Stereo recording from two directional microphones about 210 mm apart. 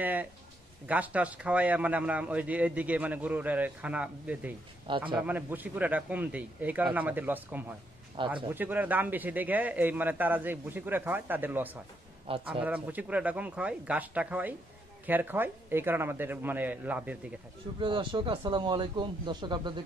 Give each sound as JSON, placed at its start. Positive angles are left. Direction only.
{"t": 0.0, "sound": "a man's voice", "side_deg": -5}
{"t": 12.3, "sound": "speech", "side_deg": -25}
{"t": 12.6, "sound": "a man's voice", "side_deg": -5}
{"t": 17.7, "sound": "speech", "side_deg": -25}